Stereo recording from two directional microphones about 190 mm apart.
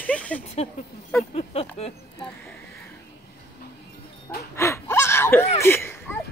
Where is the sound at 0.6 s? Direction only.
35° left (ahead or behind).